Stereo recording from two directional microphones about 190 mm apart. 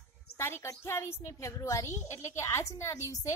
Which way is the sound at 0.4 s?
15° left (ahead or behind).